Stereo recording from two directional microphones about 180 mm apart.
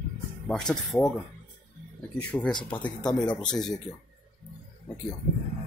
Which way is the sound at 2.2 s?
5° left (ahead or behind).